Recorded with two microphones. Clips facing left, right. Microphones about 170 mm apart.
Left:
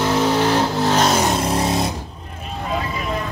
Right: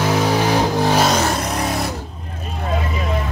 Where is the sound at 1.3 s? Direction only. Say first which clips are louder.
Left 2 dB; 25° left (ahead or behind).